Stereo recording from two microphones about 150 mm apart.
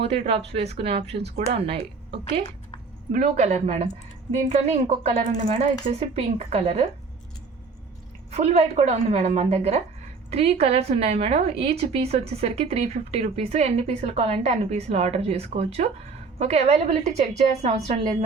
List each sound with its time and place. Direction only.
0.0 s speech: 40° right (ahead or behind)
3.1 s a woman's voice: 55° right (ahead or behind)
8.3 s a woman's voice: 45° right (ahead or behind)